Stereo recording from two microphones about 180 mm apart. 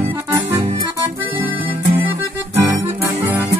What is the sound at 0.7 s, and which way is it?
Accordion, 25° right (ahead or behind).